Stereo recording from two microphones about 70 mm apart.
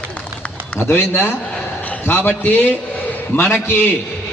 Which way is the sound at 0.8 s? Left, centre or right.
Left.